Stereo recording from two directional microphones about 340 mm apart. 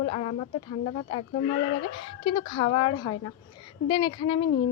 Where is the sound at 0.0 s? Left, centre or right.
Centre.